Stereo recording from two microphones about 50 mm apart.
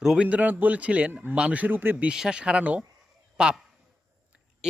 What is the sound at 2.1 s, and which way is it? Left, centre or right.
Speech, centre.